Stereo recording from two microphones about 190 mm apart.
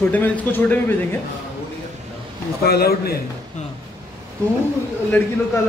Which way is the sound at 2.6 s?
55° left (ahead or behind).